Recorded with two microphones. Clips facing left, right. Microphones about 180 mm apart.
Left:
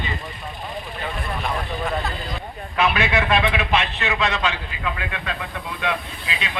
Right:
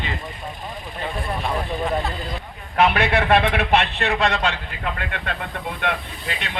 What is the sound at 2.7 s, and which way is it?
A man's voice, 55° right (ahead or behind).